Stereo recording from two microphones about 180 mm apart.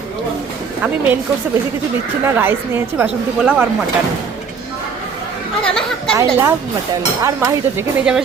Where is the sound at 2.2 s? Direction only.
10° right (ahead or behind).